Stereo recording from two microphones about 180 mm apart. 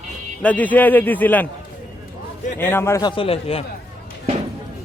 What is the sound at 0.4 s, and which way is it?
Speech, 10° left (ahead or behind).